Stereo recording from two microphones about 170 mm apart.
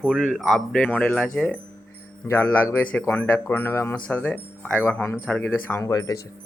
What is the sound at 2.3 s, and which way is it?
A man's voice, 15° left (ahead or behind).